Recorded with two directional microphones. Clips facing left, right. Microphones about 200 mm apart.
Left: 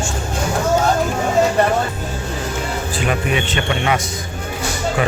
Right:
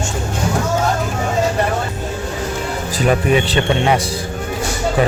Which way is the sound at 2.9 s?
35° right (ahead or behind).